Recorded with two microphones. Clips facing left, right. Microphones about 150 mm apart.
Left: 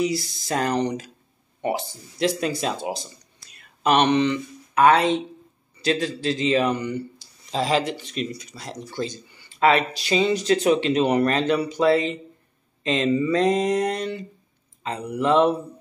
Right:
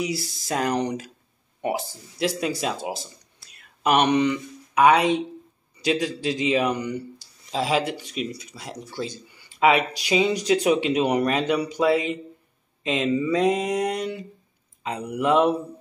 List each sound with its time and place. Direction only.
0.0 s speech: 10° right (ahead or behind)